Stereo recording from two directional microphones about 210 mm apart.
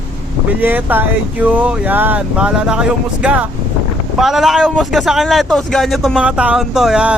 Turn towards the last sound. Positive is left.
turn(degrees=-5)  # may be behind; listen again after turning